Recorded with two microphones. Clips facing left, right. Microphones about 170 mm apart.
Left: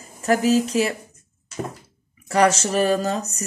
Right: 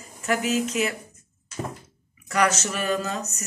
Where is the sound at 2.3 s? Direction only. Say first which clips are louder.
Left 5 dB; 30° left (ahead or behind).